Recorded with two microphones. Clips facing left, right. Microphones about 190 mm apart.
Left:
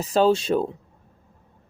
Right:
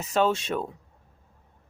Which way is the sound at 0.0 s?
35° left (ahead or behind).